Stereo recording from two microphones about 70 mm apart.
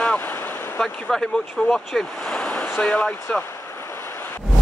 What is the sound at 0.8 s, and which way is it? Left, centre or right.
Speech, centre.